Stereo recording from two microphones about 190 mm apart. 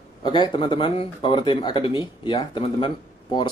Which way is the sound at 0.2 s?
25° left (ahead or behind).